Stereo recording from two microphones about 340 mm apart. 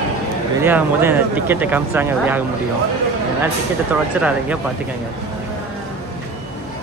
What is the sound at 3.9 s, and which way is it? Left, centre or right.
Speech, centre.